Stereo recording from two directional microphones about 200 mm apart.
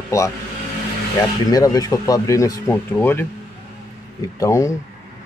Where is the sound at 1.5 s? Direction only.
20° left (ahead or behind).